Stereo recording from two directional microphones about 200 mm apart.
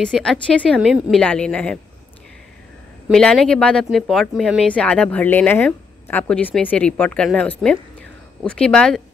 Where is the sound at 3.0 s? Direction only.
Centre (ahead or behind).